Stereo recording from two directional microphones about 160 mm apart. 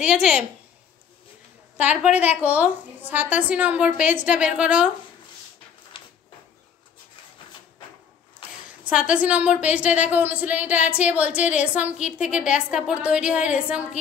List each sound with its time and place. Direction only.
0.0 s a woman's voice: 5° right (ahead or behind)
1.8 s a woman's voice: 10° right (ahead or behind)
5.9 s a sound: 30° left (ahead or behind)
8.6 s a woman's voice: 5° right (ahead or behind)